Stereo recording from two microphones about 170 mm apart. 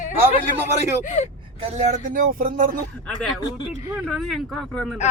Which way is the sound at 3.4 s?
20° left (ahead or behind).